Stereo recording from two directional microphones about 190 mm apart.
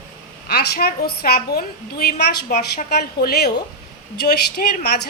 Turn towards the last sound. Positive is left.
turn(degrees=55)  # may be behind; listen again after turning